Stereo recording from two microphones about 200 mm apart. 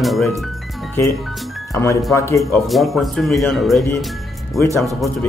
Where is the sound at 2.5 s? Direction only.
Centre (ahead or behind).